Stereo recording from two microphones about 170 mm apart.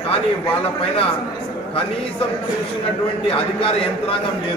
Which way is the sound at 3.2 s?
35° left (ahead or behind).